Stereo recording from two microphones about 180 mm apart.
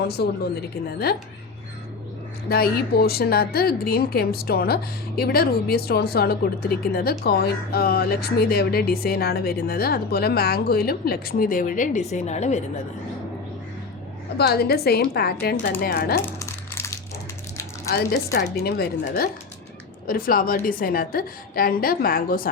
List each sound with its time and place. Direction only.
0.1 s a woman's voice: 65° left (ahead or behind)
2.5 s a woman's voice: 60° left (ahead or behind); by 12.6 s 40° left (ahead or behind)
14.3 s a woman's voice: 60° left (ahead or behind)
16.2 s crumpling: 15° left (ahead or behind)
18.3 s a woman's voice: 65° left (ahead or behind)